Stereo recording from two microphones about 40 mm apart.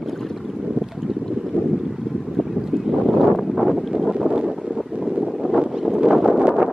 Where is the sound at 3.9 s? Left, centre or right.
Centre.